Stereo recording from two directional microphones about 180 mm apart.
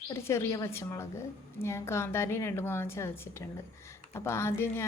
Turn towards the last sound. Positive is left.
turn(degrees=15)  # may be behind; listen again after turning